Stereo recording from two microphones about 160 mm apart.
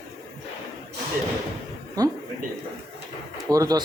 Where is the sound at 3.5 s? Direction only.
20° right (ahead or behind).